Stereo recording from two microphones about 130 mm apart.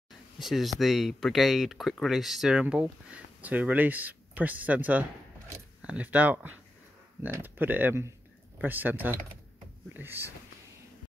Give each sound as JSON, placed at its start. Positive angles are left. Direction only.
{"t": 0.4, "sound": "speech", "side_deg": 0}